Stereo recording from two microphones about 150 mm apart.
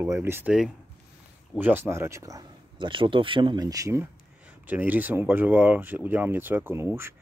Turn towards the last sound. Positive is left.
turn(degrees=-15)  # may be behind; listen again after turning